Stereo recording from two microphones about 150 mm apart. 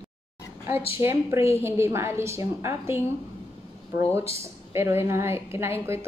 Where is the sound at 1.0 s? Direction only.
20° right (ahead or behind).